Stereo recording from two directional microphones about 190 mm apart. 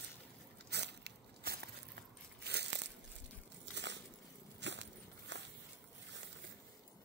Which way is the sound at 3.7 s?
65° right (ahead or behind).